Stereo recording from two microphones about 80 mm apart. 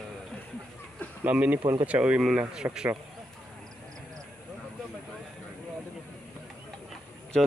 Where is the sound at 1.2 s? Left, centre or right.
Right.